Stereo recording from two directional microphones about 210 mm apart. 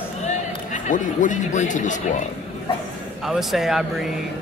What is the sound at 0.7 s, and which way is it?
Speech, 35° left (ahead or behind).